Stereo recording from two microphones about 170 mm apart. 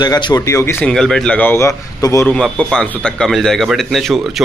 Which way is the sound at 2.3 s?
5° left (ahead or behind).